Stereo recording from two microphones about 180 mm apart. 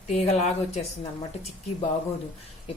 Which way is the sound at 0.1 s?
35° left (ahead or behind).